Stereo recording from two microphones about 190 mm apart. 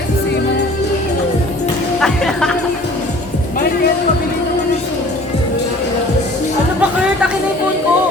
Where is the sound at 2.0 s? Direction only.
5° left (ahead or behind).